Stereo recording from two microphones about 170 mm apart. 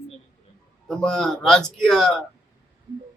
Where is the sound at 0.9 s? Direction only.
5° left (ahead or behind).